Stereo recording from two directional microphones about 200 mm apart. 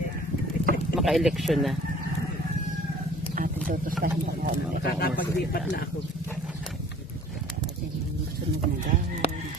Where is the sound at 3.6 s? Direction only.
45° right (ahead or behind).